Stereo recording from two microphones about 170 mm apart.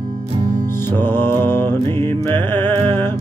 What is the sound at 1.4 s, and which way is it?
Music, 15° left (ahead or behind).